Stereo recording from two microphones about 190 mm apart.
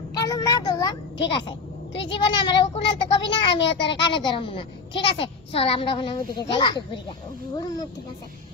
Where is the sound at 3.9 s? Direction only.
25° left (ahead or behind).